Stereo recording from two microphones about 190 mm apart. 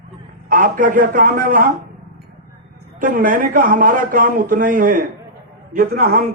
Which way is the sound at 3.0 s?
45° right (ahead or behind).